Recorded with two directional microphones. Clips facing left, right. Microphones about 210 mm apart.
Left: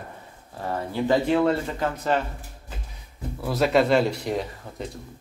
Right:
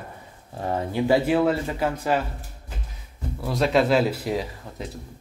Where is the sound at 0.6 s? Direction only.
20° right (ahead or behind).